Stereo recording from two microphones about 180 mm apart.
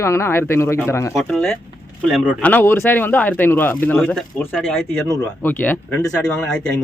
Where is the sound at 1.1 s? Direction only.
5° left (ahead or behind).